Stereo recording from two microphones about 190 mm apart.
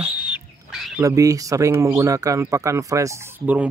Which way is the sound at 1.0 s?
15° right (ahead or behind).